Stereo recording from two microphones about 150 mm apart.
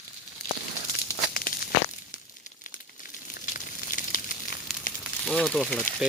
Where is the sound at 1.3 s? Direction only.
75° left (ahead or behind).